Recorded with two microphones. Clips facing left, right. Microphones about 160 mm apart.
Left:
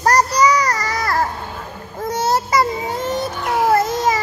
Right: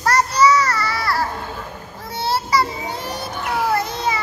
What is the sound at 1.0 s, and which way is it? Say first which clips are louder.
Babbling: left 5 dB; 45° left (ahead or behind).